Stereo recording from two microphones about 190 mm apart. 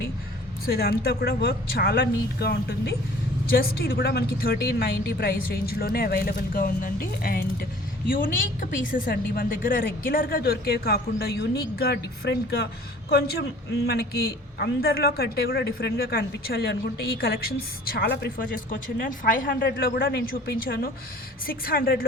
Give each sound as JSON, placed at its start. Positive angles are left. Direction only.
{"t": 0.6, "sound": "a man's voice", "side_deg": 55}
{"t": 17.8, "sound": "a woman's voice", "side_deg": 55}
{"t": 19.5, "sound": "a man's voice", "side_deg": 65}